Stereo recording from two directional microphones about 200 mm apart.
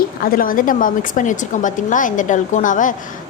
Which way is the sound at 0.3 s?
45° left (ahead or behind).